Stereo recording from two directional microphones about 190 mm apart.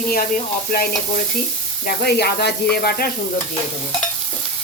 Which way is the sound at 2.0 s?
60° left (ahead or behind).